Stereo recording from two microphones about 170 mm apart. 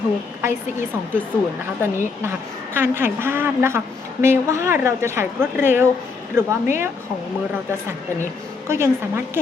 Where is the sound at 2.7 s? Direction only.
15° right (ahead or behind).